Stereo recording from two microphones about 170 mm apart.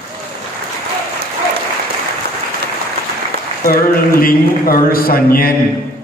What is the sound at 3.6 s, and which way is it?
Mantra, 60° left (ahead or behind).